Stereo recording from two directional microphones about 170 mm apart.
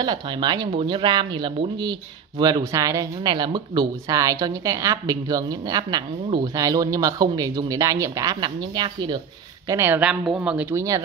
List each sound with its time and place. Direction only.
0.0 s speech: 25° right (ahead or behind)
9.7 s speech: 15° right (ahead or behind)